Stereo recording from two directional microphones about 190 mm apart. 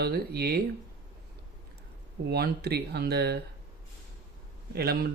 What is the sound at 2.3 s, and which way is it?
Speech, 60° right (ahead or behind).